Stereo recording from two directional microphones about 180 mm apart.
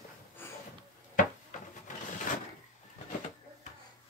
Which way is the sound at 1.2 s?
45° left (ahead or behind).